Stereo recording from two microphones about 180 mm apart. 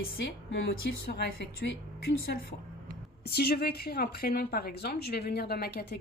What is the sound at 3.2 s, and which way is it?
A woman's voice, 65° left (ahead or behind).